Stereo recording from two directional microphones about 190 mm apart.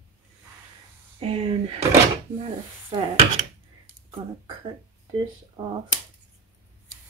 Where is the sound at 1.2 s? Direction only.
30° right (ahead or behind).